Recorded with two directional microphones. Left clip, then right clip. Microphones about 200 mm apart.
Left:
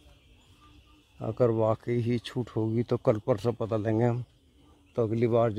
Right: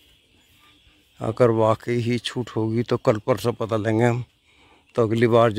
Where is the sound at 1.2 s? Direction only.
15° right (ahead or behind).